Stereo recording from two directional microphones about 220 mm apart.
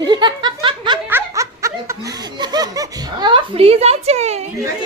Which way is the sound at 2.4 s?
20° right (ahead or behind).